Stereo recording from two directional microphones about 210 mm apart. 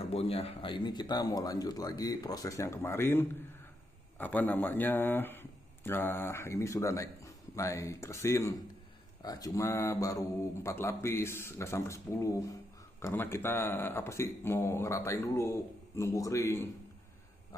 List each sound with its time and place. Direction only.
0.1 s speech: 30° left (ahead or behind)